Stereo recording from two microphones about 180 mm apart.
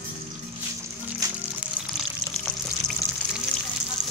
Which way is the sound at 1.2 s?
20° right (ahead or behind).